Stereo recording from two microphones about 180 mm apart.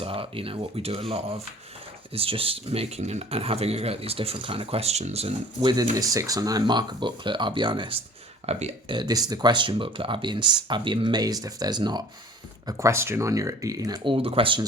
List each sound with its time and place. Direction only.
0.0 s speech: 30° right (ahead or behind)
5.5 s speech: 20° right (ahead or behind); by 9.0 s 35° right (ahead or behind)
9.0 s speech: 20° right (ahead or behind)